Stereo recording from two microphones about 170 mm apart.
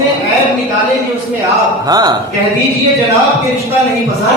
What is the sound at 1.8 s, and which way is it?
Speech, 20° right (ahead or behind).